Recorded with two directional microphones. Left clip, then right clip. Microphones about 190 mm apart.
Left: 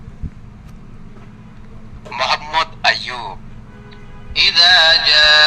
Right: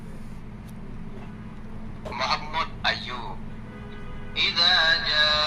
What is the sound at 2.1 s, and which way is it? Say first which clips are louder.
Honk: left 8 dB; 55° left (ahead or behind).